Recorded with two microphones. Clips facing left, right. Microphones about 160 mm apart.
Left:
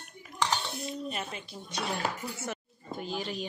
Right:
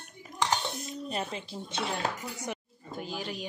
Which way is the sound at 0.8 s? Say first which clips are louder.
Right 1 dB; 35° right (ahead or behind).